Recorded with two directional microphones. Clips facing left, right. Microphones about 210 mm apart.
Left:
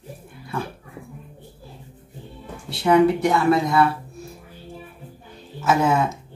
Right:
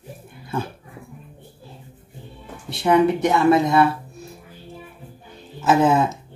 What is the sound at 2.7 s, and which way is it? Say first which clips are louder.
Speech: left 1 dB; 20° right (ahead or behind).